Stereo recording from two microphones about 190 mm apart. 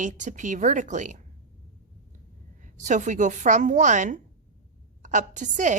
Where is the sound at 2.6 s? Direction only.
40° right (ahead or behind).